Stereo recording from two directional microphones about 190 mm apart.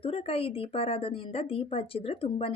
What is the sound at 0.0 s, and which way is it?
Speech, 30° left (ahead or behind).